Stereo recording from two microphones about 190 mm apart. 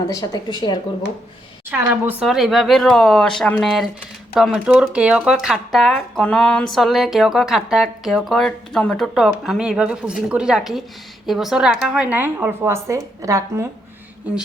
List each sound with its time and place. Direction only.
0.1 s speech: 20° left (ahead or behind)
1.7 s a woman's voice: 10° right (ahead or behind)